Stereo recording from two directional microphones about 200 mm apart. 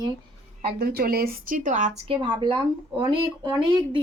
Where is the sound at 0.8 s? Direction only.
50° right (ahead or behind).